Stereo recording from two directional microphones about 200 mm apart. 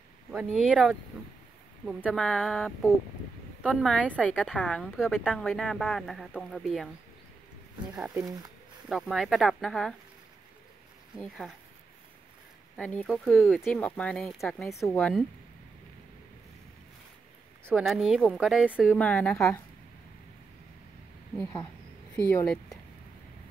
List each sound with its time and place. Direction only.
0.5 s a woman's voice: 5° right (ahead or behind)
2.0 s a woman's voice: 5° left (ahead or behind)
7.9 s speech: 10° right (ahead or behind)
8.8 s a woman's voice: centre (ahead or behind)
11.1 s a woman's voice: centre (ahead or behind)
12.7 s a woman's voice: 5° left (ahead or behind)
17.7 s a woman's voice: centre (ahead or behind)
18.9 s a woman's voice: 5° left (ahead or behind)
22.1 s speech: 10° left (ahead or behind)